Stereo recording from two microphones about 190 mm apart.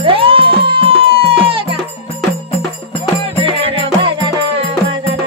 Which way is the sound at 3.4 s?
25° right (ahead or behind).